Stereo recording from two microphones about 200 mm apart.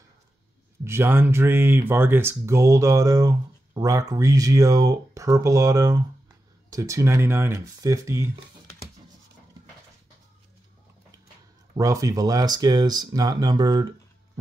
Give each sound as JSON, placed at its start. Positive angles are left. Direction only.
{"t": 0.8, "sound": "speech", "side_deg": -10}
{"t": 11.7, "sound": "speech", "side_deg": -15}